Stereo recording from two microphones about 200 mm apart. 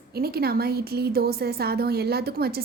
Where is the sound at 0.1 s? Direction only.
50° right (ahead or behind).